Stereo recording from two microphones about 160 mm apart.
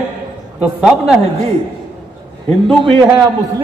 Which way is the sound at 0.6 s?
5° right (ahead or behind).